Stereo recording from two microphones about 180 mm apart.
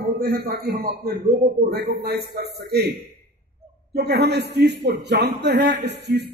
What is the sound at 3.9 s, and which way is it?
A man's voice, 65° right (ahead or behind).